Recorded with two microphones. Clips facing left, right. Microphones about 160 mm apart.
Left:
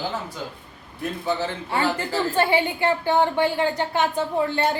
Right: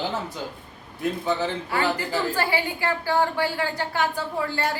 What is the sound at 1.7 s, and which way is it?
A woman's voice, 25° left (ahead or behind).